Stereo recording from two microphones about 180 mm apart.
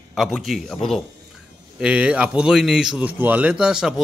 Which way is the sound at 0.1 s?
Centre (ahead or behind).